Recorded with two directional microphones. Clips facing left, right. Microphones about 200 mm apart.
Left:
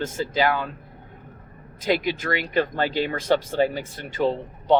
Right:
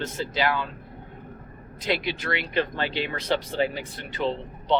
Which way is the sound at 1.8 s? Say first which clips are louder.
Left 4 dB; 45° left (ahead or behind).